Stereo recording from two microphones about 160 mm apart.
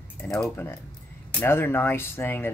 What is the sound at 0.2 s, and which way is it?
Speech, 15° left (ahead or behind).